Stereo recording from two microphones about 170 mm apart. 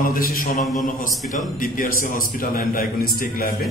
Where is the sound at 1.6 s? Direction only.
55° left (ahead or behind).